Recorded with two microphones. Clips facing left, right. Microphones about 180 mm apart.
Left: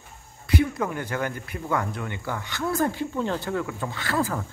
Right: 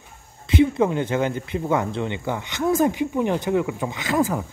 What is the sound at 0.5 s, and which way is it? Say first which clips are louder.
Speech: right 6 dB; 20° right (ahead or behind).